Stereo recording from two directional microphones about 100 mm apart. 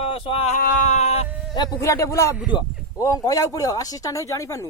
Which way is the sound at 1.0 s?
90° left.